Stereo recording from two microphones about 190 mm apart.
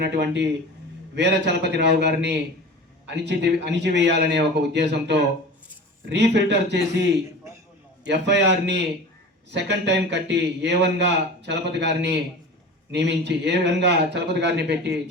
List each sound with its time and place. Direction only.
0.0 s a man's voice: 65° right (ahead or behind)
8.0 s a man's voice: 65° right (ahead or behind)